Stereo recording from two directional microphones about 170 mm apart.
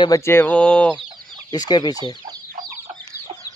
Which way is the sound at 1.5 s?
25° left (ahead or behind).